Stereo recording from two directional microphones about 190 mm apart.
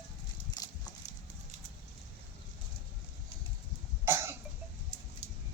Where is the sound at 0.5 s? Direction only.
20° left (ahead or behind).